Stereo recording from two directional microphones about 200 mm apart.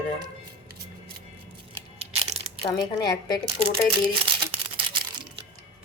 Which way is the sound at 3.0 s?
20° left (ahead or behind).